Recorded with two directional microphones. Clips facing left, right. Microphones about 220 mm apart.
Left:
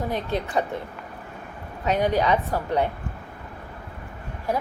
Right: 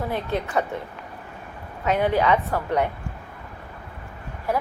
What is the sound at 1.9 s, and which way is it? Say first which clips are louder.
Speech: right 1 dB; 15° left (ahead or behind).